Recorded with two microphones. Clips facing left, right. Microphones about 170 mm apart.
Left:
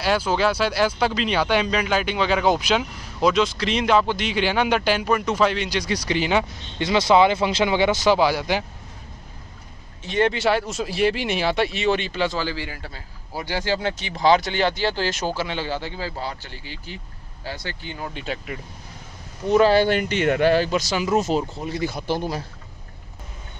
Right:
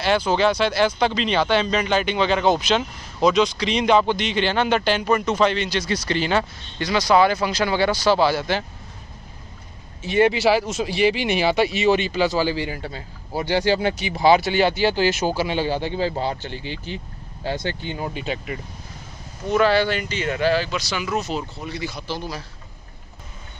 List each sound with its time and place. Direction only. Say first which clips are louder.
0.0 s speech: right 2 dB; 5° left (ahead or behind)
6.8 s speech: left 1 dB; 25° left (ahead or behind)
10.0 s speech: right 3 dB; 5° right (ahead or behind)
12.4 s a man's voice: right 5 dB; 20° right (ahead or behind)
18.1 s speech: right 2 dB; centre (ahead or behind)
19.6 s speech: left 1 dB; 45° left (ahead or behind)